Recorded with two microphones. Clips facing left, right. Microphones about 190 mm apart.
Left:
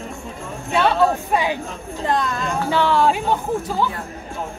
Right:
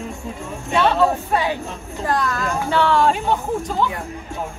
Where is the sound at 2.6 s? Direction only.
10° left (ahead or behind).